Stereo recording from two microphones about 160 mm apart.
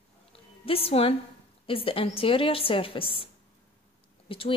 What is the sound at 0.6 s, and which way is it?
A woman's voice, 35° left (ahead or behind).